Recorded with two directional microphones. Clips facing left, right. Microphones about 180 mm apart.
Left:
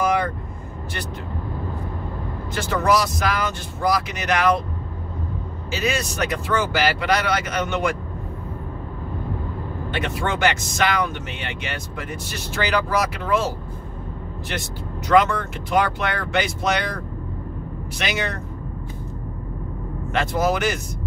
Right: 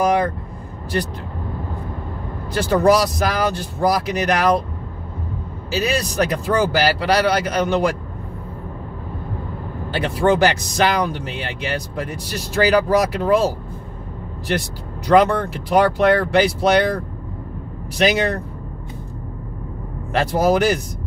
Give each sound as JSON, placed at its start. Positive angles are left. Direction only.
{"t": 2.5, "sound": "speech", "side_deg": -35}
{"t": 5.7, "sound": "speech", "side_deg": -35}
{"t": 9.8, "sound": "speech", "side_deg": -35}
{"t": 15.0, "sound": "speech", "side_deg": -35}
{"t": 17.9, "sound": "speech", "side_deg": -35}
{"t": 20.1, "sound": "speech", "side_deg": -35}